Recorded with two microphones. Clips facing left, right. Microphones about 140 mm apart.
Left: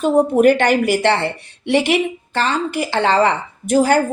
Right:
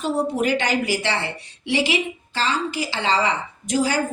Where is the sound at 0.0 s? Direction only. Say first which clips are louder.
Left 9 dB; 55° left (ahead or behind).